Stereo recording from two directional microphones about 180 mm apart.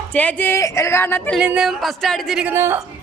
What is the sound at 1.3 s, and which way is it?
Speech, 5° right (ahead or behind).